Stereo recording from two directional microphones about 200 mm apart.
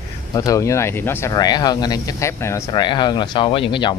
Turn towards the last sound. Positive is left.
turn(degrees=25)  # may be behind; listen again after turning